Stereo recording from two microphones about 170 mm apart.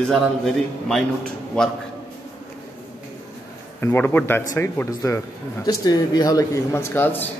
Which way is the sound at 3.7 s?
10° left (ahead or behind).